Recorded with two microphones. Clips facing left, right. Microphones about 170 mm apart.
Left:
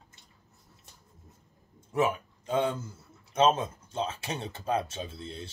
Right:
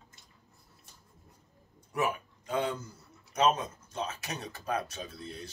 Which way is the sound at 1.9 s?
25° left (ahead or behind).